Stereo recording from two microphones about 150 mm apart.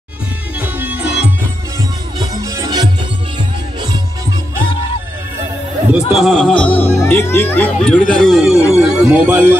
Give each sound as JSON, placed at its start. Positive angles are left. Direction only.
{"t": 0.6, "sound": "music", "side_deg": -10}
{"t": 2.1, "sound": "music", "side_deg": -20}
{"t": 5.9, "sound": "speech", "side_deg": -5}
{"t": 9.0, "sound": "speech", "side_deg": -15}